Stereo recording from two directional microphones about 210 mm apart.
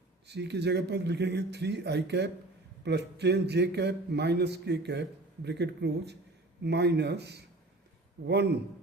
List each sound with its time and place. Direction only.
0.3 s a man's voice: 55° right (ahead or behind)